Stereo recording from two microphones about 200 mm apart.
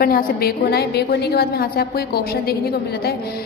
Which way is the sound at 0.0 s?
50° left (ahead or behind).